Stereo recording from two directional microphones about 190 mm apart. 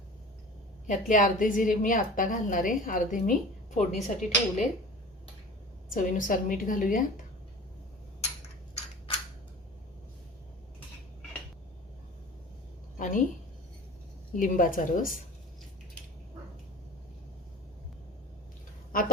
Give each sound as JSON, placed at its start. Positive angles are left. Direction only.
{"t": 0.9, "sound": "a woman's voice", "side_deg": 45}
{"t": 5.9, "sound": "a woman's voice", "side_deg": 45}
{"t": 13.0, "sound": "a woman's voice", "side_deg": 45}
{"t": 14.3, "sound": "a woman's voice", "side_deg": 45}